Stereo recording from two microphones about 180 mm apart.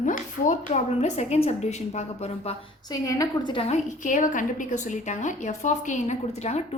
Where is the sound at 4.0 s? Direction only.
45° left (ahead or behind).